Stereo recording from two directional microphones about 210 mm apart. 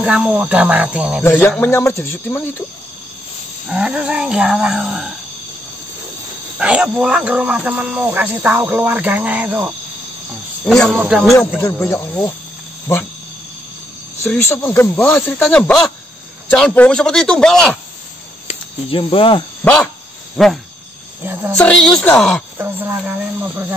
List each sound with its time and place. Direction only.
0.0 s speech: 5° right (ahead or behind)
1.2 s speech: 10° left (ahead or behind)
3.6 s speech: 5° right (ahead or behind)
6.6 s speech: 5° right (ahead or behind)
10.9 s speech: 5° right (ahead or behind)
11.6 s speech: 10° left (ahead or behind)
14.2 s speech: 10° left (ahead or behind)
18.5 s speech: 25° left (ahead or behind)
19.6 s speech: 5° left (ahead or behind)
21.5 s speech: 5° left (ahead or behind)
22.6 s speech: 10° right (ahead or behind)